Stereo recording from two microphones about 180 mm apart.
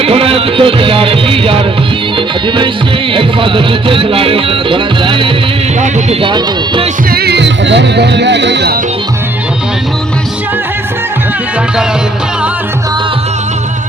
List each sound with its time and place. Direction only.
0.0 s music: 30° right (ahead or behind)
3.1 s speech: 30° right (ahead or behind)
7.1 s music: 60° right (ahead or behind)